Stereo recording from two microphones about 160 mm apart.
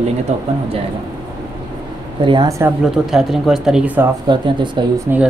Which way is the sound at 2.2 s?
30° right (ahead or behind).